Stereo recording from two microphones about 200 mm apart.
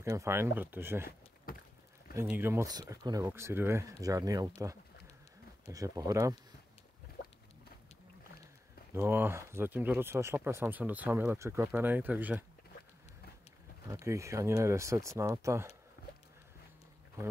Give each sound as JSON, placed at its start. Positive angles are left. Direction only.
{"t": 0.0, "sound": "speech", "side_deg": -15}
{"t": 2.1, "sound": "speech", "side_deg": -10}
{"t": 8.9, "sound": "speech", "side_deg": -10}
{"t": 13.8, "sound": "speech", "side_deg": -15}
{"t": 16.0, "sound": "a sound", "side_deg": 45}